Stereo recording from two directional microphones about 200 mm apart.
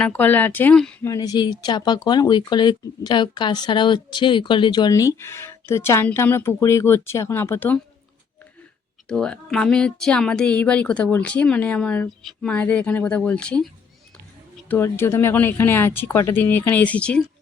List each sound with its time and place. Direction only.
0.0 s a woman's voice: 10° left (ahead or behind)
9.0 s speech: 5° left (ahead or behind)
14.7 s a woman's voice: 10° left (ahead or behind)